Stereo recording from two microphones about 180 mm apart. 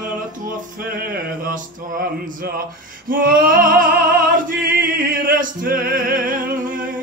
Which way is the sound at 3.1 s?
50° right (ahead or behind).